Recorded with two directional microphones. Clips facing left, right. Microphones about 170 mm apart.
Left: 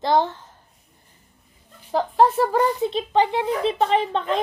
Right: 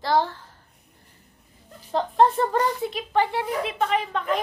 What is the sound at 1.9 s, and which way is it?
Child singing, 5° left (ahead or behind).